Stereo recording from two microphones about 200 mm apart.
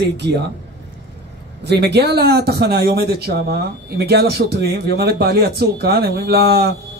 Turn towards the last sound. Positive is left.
turn(degrees=-50)  # may be behind; listen again after turning